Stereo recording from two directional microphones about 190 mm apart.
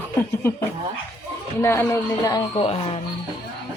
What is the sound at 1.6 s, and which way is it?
Speech, 15° left (ahead or behind).